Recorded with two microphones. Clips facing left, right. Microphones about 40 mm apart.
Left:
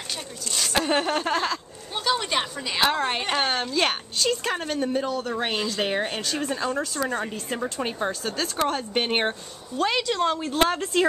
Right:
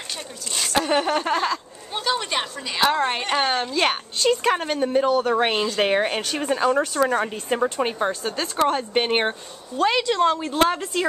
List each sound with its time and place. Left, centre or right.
0.8 s a woman's voice: centre
5.3 s speech: right
7.2 s a woman's voice: right; by 11.1 s centre